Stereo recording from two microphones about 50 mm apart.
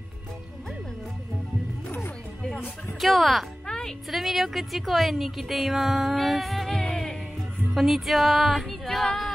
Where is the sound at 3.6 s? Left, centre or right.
Centre.